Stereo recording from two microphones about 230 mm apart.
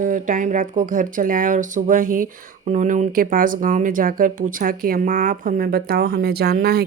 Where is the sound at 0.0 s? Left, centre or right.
Right.